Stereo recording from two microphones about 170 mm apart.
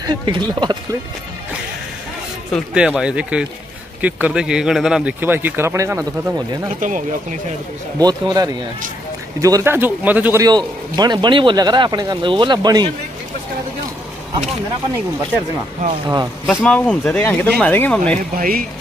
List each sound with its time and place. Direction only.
0.0 s a man's voice: 25° right (ahead or behind)
2.7 s a man's voice: 5° right (ahead or behind)
6.8 s speech: 50° right (ahead or behind)
8.0 s a man's voice: 25° right (ahead or behind)
10.4 s a man's voice: 25° right (ahead or behind)
16.4 s speech: 5° left (ahead or behind)
18.3 s speech: 55° right (ahead or behind)